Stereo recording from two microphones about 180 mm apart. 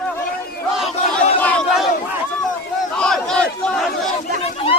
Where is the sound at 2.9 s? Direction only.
5° left (ahead or behind).